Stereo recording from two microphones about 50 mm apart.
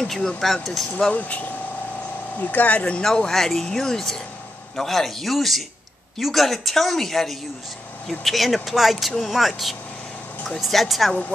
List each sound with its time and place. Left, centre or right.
0.0 s a woman's voice: centre
1.1 s speech: left
3.1 s a woman's voice: centre